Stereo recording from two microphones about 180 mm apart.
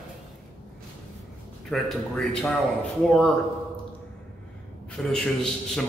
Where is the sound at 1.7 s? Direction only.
5° left (ahead or behind).